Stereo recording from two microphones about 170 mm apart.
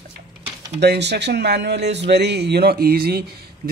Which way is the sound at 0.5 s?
80° right.